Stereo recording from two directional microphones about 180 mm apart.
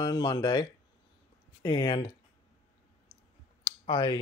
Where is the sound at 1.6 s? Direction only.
25° left (ahead or behind).